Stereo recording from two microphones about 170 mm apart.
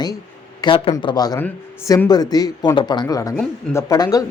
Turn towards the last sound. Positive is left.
turn(degrees=20)  # may be behind; listen again after turning